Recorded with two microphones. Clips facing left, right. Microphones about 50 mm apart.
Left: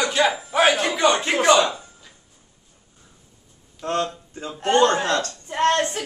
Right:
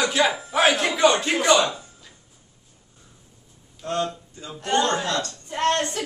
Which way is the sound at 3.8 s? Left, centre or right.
Left.